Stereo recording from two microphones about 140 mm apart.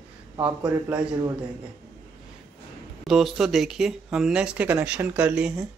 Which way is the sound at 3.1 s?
Centre (ahead or behind).